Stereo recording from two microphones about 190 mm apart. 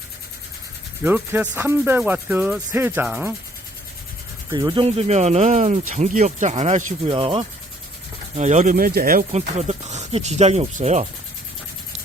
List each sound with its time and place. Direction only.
1.0 s speech: 10° right (ahead or behind)
4.5 s speech: 25° right (ahead or behind)
7.1 s speech: 25° right (ahead or behind)
8.4 s speech: 40° right (ahead or behind)